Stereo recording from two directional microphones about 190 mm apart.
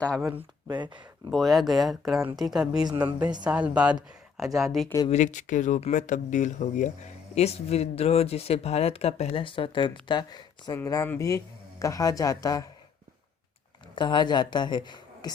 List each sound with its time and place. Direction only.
0.0 s speech: 5° left (ahead or behind)
0.7 s speech: 25° right (ahead or behind)
1.3 s speech: centre (ahead or behind)
2.8 s speech: 20° right (ahead or behind)
3.1 s a woman's voice: 5° right (ahead or behind)
5.0 s speech: 40° left (ahead or behind); by 12.6 s 20° left (ahead or behind)
13.9 s a woman's voice: 25° left (ahead or behind)